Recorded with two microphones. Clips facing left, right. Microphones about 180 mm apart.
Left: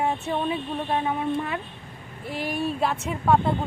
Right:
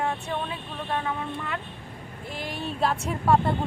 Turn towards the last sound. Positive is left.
turn(degrees=0)  # may be behind; listen again after turning